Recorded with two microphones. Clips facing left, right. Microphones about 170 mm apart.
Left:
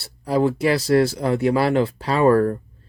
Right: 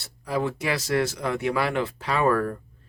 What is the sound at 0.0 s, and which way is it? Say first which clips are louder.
Speech: left 7 dB; 35° left (ahead or behind).